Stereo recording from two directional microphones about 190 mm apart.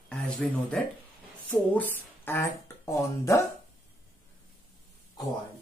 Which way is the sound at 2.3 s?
10° left (ahead or behind).